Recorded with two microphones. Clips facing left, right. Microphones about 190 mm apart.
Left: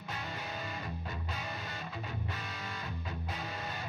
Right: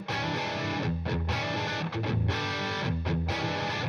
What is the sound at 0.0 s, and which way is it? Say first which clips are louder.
Music: right 9 dB; 90° right.